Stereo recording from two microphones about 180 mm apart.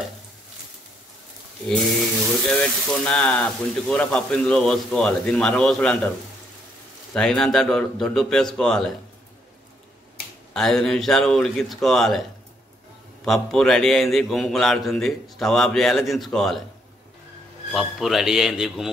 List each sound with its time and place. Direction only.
2.4 s speech: 5° left (ahead or behind)
7.2 s speech: 5° left (ahead or behind)
10.5 s speech: centre (ahead or behind)
17.7 s speech: centre (ahead or behind)